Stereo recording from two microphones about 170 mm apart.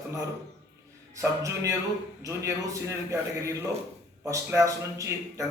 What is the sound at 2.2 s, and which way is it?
A man's voice, 15° right (ahead or behind).